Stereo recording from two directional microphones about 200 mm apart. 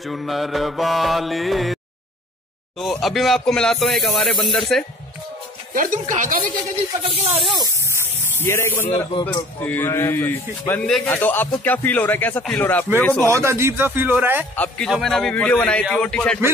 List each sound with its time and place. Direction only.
0.0 s mantra: centre (ahead or behind)
2.8 s mantra: centre (ahead or behind)
5.7 s speech: 40° right (ahead or behind)
7.5 s speech: 15° right (ahead or behind)
8.4 s speech: 10° left (ahead or behind)
13.0 s mantra: 5° left (ahead or behind)
13.3 s a man's voice: 15° right (ahead or behind)
14.5 s speech: 5° left (ahead or behind)
14.9 s mantra: centre (ahead or behind)